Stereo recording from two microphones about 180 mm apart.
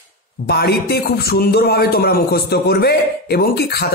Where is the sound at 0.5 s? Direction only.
65° left (ahead or behind).